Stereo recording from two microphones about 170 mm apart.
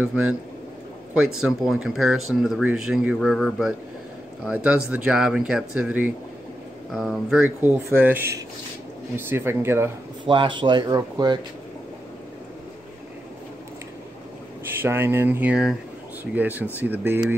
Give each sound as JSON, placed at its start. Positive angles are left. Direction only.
{"t": 0.0, "sound": "speech", "side_deg": -5}
{"t": 10.2, "sound": "speech", "side_deg": -30}
{"t": 14.8, "sound": "speech", "side_deg": -15}